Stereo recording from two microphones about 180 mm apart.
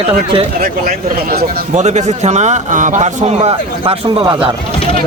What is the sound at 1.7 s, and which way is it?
A man's voice, 40° right (ahead or behind).